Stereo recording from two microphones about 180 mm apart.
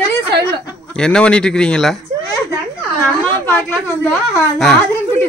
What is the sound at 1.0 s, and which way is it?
A woman's voice, 5° left (ahead or behind).